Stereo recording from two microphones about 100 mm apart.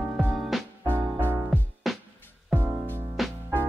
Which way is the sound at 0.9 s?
20° right (ahead or behind).